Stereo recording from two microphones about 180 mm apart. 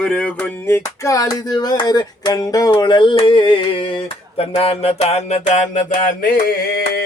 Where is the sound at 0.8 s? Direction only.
20° left (ahead or behind); by 5.6 s 40° left (ahead or behind).